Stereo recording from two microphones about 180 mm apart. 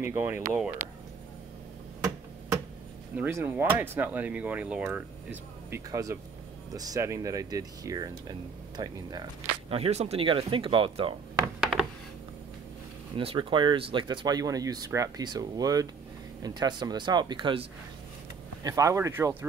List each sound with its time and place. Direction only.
0.0 s speech: 10° right (ahead or behind)
3.2 s speech: 15° right (ahead or behind)
9.7 s speech: 35° right (ahead or behind)
13.1 s speech: 30° right (ahead or behind)